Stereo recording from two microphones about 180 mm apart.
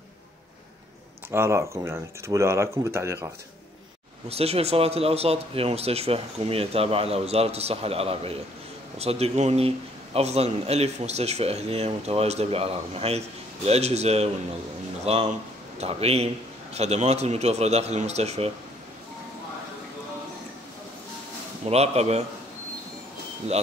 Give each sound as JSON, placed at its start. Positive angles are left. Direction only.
{"t": 1.3, "sound": "speech", "side_deg": -15}
{"t": 4.3, "sound": "a man's voice", "side_deg": -35}
{"t": 21.6, "sound": "a man's voice", "side_deg": -35}